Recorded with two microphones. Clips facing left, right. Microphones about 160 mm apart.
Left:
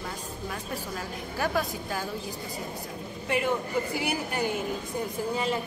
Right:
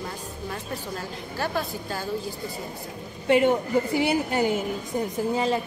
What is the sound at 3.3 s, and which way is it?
A woman's voice, 25° right (ahead or behind).